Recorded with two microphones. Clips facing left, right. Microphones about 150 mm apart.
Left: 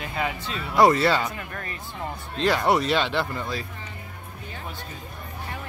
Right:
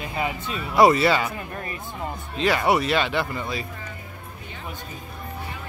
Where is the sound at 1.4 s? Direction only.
20° right (ahead or behind).